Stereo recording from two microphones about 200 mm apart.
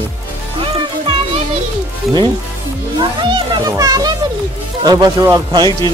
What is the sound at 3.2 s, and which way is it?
Speech, 15° right (ahead or behind).